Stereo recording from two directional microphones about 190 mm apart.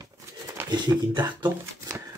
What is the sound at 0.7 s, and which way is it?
Speech, 20° right (ahead or behind).